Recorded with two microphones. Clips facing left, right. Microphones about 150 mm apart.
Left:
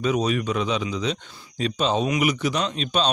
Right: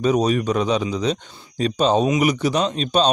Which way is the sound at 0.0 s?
40° right (ahead or behind).